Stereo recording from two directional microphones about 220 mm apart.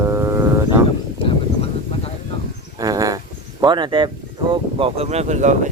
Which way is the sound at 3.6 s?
20° right (ahead or behind).